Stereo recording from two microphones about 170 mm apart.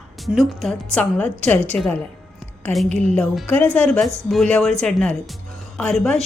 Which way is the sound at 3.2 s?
5° left (ahead or behind).